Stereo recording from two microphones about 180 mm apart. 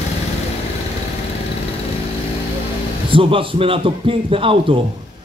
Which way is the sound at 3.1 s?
30° right (ahead or behind).